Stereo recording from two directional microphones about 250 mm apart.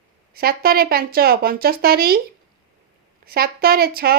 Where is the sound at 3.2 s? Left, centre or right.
Right.